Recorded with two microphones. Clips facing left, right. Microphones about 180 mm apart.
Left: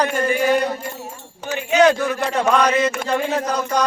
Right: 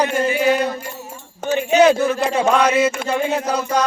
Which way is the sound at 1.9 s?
20° right (ahead or behind).